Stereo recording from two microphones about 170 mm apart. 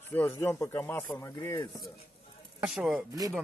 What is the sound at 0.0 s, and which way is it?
Speech, 10° left (ahead or behind).